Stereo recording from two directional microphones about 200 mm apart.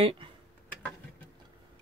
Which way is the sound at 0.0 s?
25° right (ahead or behind).